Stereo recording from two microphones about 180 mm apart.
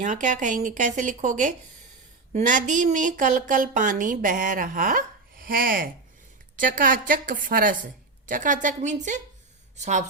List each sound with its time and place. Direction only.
0.0 s speech: 45° right (ahead or behind)